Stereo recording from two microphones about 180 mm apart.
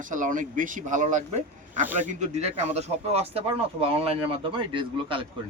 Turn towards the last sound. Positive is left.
turn(degrees=-30)  # may be behind; listen again after turning